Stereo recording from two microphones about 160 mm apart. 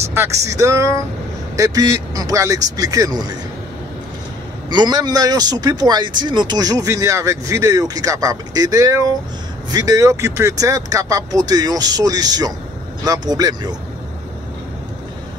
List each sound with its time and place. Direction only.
0.0 s speech: 15° right (ahead or behind)
4.6 s speech: 25° right (ahead or behind)